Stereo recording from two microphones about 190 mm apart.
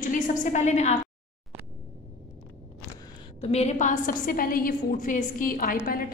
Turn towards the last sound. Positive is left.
turn(degrees=50)  # may be behind; listen again after turning